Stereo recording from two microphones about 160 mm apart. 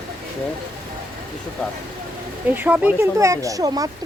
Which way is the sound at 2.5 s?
10° right (ahead or behind).